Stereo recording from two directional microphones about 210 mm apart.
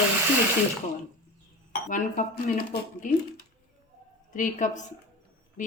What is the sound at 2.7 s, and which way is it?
Speech, 50° left (ahead or behind).